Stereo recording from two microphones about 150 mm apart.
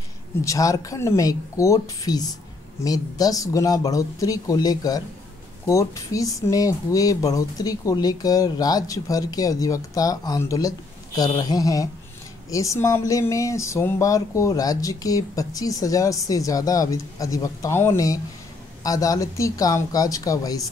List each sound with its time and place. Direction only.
0.4 s speech: 20° left (ahead or behind)